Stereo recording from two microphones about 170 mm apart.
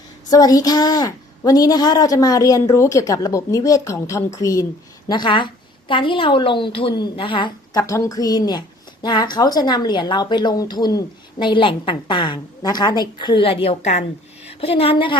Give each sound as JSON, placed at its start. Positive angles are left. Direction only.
{"t": 0.3, "sound": "a woman's voice", "side_deg": 20}